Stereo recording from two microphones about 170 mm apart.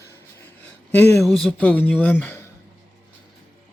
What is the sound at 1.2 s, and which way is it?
Speech, centre (ahead or behind).